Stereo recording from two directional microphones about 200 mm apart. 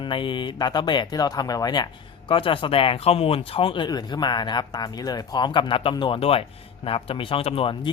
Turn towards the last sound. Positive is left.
turn(degrees=25)  # may be behind; listen again after turning